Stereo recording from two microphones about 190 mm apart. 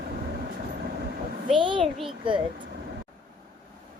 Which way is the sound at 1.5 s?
25° right (ahead or behind).